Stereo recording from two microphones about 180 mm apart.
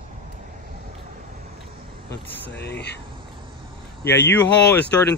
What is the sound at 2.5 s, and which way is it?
Speech, 70° left (ahead or behind).